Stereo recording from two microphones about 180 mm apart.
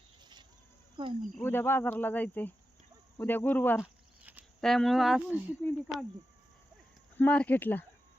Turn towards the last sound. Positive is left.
turn(degrees=10)  # may be behind; listen again after turning